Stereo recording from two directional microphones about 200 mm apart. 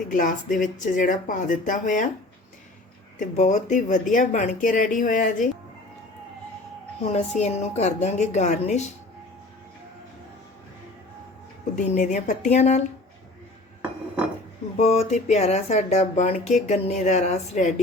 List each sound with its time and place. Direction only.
0.1 s speech: 40° left (ahead or behind)
3.2 s speech: 35° left (ahead or behind)
7.0 s speech: 35° left (ahead or behind)
11.8 s speech: 40° left (ahead or behind)
14.8 s speech: 30° left (ahead or behind)